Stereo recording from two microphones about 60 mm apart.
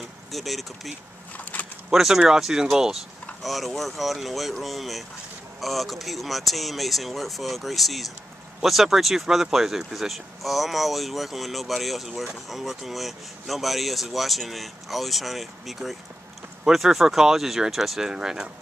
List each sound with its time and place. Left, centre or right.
0.3 s speech: centre
1.3 s a sound: left
1.9 s speech: centre